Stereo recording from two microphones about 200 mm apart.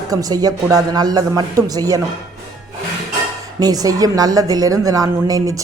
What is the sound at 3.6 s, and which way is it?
A woman's voice, 20° right (ahead or behind).